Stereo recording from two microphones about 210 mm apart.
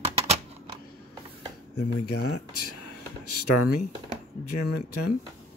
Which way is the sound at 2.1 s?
90° left.